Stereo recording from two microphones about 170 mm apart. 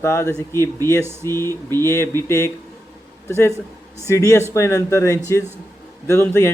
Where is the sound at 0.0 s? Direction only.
15° left (ahead or behind).